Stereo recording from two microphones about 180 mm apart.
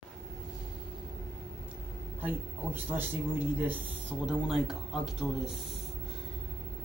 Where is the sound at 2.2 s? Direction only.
10° right (ahead or behind).